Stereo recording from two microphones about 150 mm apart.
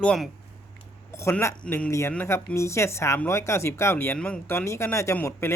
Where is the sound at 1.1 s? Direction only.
20° left (ahead or behind).